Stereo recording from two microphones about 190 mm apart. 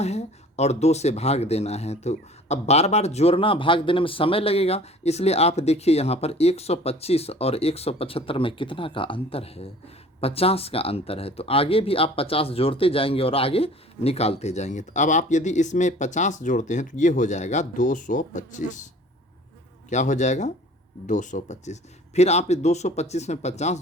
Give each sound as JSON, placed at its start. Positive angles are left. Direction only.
{"t": 0.0, "sound": "speech", "side_deg": 35}
{"t": 19.9, "sound": "speech", "side_deg": 40}